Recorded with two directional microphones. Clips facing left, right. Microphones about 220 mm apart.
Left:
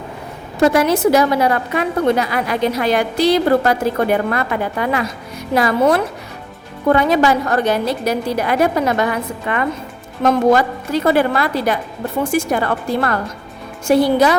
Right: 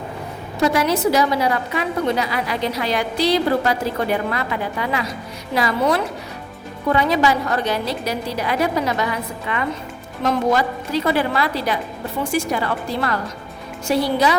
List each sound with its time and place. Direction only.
0.6 s a woman's voice: 50° left (ahead or behind)